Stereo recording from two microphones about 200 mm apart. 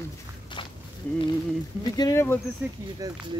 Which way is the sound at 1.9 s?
15° left (ahead or behind).